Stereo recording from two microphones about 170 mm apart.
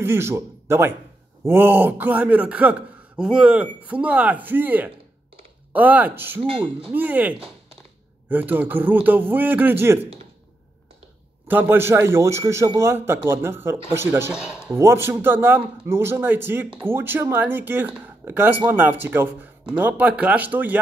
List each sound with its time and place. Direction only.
0.0 s a man's voice: 15° right (ahead or behind)
6.4 s speech: 30° right (ahead or behind)
6.9 s a man's voice: 10° right (ahead or behind)
11.4 s a man's voice: 10° right (ahead or behind)